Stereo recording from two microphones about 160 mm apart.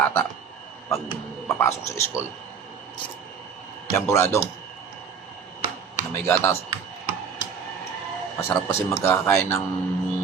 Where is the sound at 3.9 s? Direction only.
15° left (ahead or behind).